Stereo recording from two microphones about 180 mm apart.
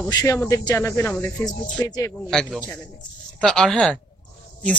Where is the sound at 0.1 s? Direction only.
20° left (ahead or behind).